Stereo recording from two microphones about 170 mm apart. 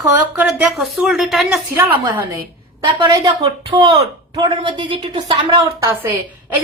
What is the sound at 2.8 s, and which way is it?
A woman's voice, 25° right (ahead or behind).